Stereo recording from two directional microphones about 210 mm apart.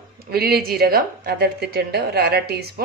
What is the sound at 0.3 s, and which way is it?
Speech, 45° right (ahead or behind).